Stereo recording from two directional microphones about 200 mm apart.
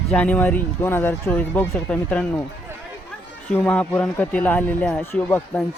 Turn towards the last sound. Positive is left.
turn(degrees=10)  # may be behind; listen again after turning